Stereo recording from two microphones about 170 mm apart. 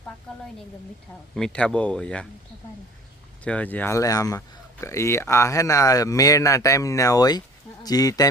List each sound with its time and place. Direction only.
1.4 s speech: 5° left (ahead or behind)
3.4 s speech: 10° left (ahead or behind)